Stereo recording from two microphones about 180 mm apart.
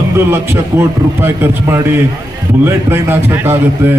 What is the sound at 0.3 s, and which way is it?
A man's voice, 15° right (ahead or behind).